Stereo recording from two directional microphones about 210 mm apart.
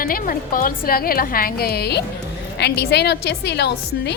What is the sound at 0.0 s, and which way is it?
A woman's voice, 45° left (ahead or behind).